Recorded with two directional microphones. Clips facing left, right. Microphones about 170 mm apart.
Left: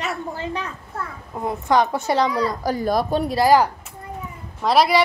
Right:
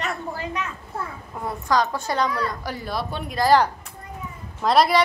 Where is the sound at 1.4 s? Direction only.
20° left (ahead or behind).